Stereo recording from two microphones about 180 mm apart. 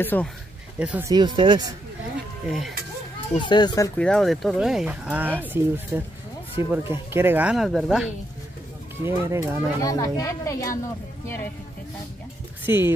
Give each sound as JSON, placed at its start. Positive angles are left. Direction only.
{"t": 0.0, "sound": "speech", "side_deg": 10}
{"t": 0.7, "sound": "speech", "side_deg": -5}
{"t": 1.0, "sound": "speech", "side_deg": -25}
{"t": 2.4, "sound": "speech", "side_deg": 0}
{"t": 3.3, "sound": "speech", "side_deg": 25}
{"t": 4.0, "sound": "speech", "side_deg": 0}
{"t": 9.0, "sound": "speech", "side_deg": -15}
{"t": 9.8, "sound": "speech", "side_deg": 20}
{"t": 12.6, "sound": "speech", "side_deg": -15}